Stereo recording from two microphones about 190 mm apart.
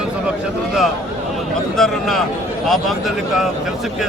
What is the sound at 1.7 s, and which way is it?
Speech, centre (ahead or behind).